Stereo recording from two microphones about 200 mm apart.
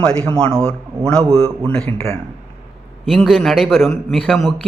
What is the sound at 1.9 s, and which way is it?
Speech, 30° right (ahead or behind).